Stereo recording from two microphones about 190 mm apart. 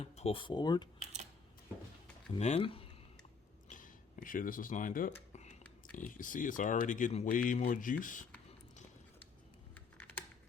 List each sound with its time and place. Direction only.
0.0 s speech: 30° left (ahead or behind)
2.4 s speech: 30° left (ahead or behind)
3.7 s speech: 45° left (ahead or behind)
5.3 s a sound: 35° left (ahead or behind)
6.0 s speech: 45° left (ahead or behind)
9.7 s computer keyboard: 10° left (ahead or behind)